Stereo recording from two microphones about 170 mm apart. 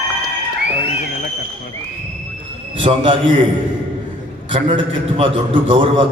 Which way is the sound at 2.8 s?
30° right (ahead or behind).